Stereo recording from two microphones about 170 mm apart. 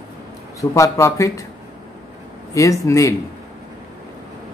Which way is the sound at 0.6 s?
20° left (ahead or behind).